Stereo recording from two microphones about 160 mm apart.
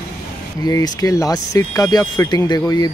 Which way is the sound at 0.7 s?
20° left (ahead or behind).